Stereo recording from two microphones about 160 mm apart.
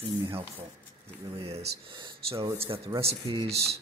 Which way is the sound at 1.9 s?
35° right (ahead or behind).